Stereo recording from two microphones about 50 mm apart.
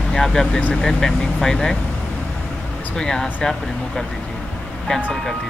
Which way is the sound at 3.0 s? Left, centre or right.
Centre.